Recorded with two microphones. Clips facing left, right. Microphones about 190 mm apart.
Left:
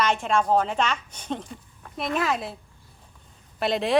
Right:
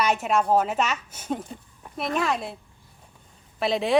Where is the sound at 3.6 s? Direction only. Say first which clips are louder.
Even; centre (ahead or behind).